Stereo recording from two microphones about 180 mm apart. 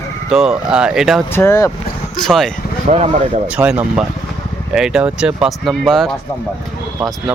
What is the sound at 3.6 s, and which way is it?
Speech, 5° right (ahead or behind).